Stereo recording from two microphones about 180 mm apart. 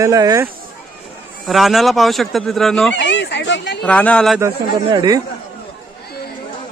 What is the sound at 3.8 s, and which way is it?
Speech, 5° left (ahead or behind).